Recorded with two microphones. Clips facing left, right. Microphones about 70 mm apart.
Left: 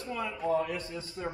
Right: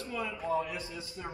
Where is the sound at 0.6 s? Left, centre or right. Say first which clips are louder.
Left 4 dB; left.